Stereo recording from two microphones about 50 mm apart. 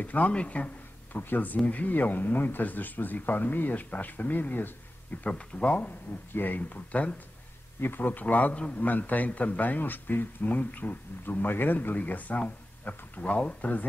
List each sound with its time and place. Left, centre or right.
0.0 s speech: left
1.1 s speech: left
5.2 s speech: left
7.8 s speech: left